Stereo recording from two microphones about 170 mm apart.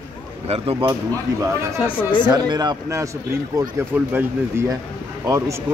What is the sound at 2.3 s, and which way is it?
Speech, 25° right (ahead or behind).